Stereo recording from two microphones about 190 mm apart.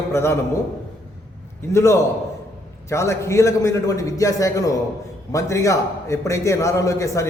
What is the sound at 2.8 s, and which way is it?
A man's voice, 15° left (ahead or behind).